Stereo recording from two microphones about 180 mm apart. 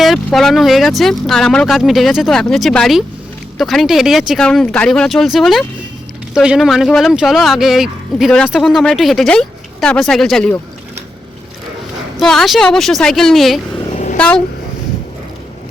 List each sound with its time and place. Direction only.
0.0 s speech: centre (ahead or behind)
12.2 s speech: centre (ahead or behind)
13.9 s vehicle: 40° left (ahead or behind)
14.2 s speech: 5° left (ahead or behind)